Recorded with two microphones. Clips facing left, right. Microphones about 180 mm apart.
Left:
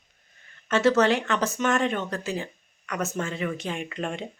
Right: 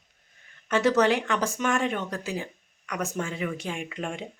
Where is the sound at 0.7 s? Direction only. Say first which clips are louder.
Left 1 dB; 15° right (ahead or behind).